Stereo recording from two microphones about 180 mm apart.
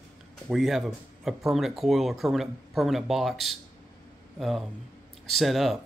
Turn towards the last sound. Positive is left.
turn(degrees=0)  # may be behind; listen again after turning